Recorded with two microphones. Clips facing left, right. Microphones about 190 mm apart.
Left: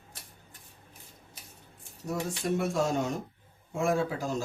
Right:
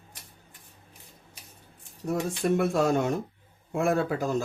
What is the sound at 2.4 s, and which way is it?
Speech, 60° right (ahead or behind).